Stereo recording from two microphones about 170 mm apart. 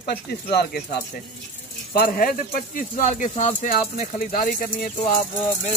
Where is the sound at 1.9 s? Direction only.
60° left (ahead or behind).